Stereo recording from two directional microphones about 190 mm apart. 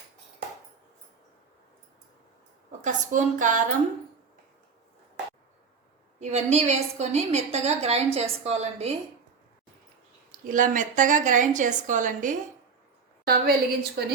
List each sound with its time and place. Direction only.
2.8 s a woman's voice: 40° right (ahead or behind)
6.1 s a woman's voice: 35° right (ahead or behind)
10.4 s a woman's voice: 45° right (ahead or behind)
13.2 s a woman's voice: 55° right (ahead or behind)